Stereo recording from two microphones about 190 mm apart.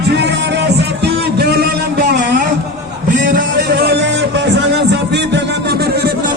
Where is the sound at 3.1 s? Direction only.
45° right (ahead or behind).